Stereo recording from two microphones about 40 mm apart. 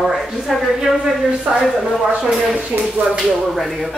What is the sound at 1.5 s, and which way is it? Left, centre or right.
Speech, right.